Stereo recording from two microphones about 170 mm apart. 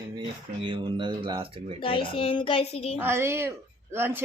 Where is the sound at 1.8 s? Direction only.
30° left (ahead or behind).